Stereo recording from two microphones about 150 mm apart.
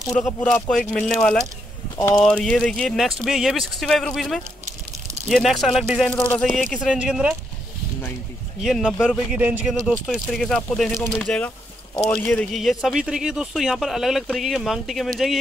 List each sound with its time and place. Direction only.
0.0 s speech: 5° left (ahead or behind)
2.0 s speech: 15° left (ahead or behind)
2.2 s speech: 5° left (ahead or behind)
7.0 s speech: 5° right (ahead or behind)
8.5 s speech: 5° right (ahead or behind)
9.8 s speech: centre (ahead or behind)